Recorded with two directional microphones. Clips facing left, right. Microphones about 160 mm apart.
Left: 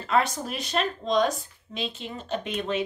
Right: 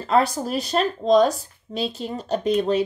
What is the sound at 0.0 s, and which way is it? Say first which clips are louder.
A woman's voice: right 5 dB; 35° right (ahead or behind).